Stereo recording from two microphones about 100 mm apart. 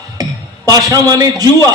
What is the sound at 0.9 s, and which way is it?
Speech, 35° right (ahead or behind).